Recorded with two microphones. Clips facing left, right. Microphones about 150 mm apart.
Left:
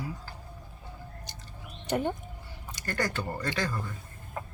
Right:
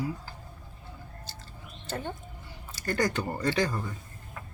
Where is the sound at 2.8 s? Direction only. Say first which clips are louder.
Right 3 dB; 15° right (ahead or behind).